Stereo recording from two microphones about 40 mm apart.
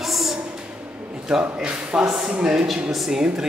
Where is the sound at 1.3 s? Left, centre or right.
Centre.